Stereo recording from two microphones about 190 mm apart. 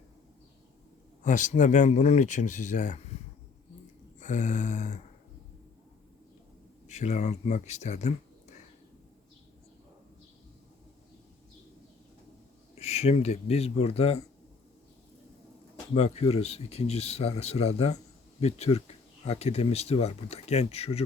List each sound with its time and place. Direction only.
1.2 s speech: 40° left (ahead or behind)
4.2 s speech: 40° left (ahead or behind)
6.8 s speech: 35° left (ahead or behind)
12.7 s speech: 35° left (ahead or behind)
16.0 s speech: 35° left (ahead or behind)